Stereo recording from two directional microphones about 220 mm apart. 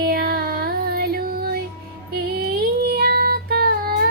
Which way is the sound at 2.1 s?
45° right (ahead or behind).